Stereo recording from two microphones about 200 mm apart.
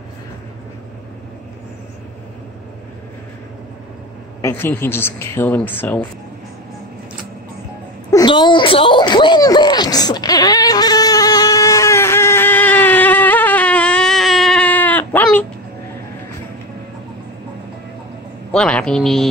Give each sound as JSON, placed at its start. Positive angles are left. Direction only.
{"t": 4.4, "sound": "speech", "side_deg": 10}
{"t": 8.1, "sound": "a sound", "side_deg": 20}
{"t": 18.5, "sound": "a woman's voice", "side_deg": 5}